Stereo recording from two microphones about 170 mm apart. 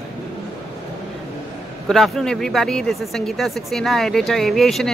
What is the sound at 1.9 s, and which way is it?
Speech, centre (ahead or behind).